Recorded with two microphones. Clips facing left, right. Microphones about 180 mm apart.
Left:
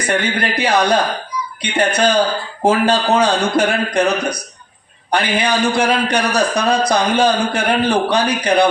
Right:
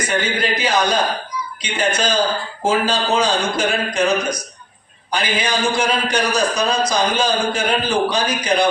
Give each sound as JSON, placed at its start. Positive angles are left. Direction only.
{"t": 0.1, "sound": "speech", "side_deg": 60}